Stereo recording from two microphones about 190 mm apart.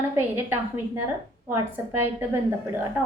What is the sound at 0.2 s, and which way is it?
A woman's voice, 15° right (ahead or behind).